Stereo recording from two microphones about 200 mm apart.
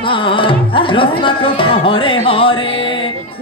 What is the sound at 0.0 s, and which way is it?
Music, 25° left (ahead or behind).